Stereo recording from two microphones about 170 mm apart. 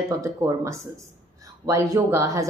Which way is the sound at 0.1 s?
20° right (ahead or behind).